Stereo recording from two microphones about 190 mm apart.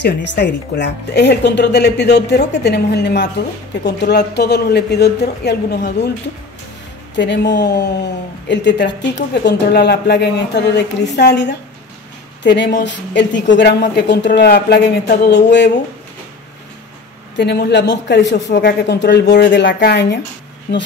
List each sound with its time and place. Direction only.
0.0 s speech: 65° left (ahead or behind)
7.2 s speech: 65° left (ahead or behind)
12.4 s speech: 65° left (ahead or behind)
17.4 s a man's voice: 60° left (ahead or behind)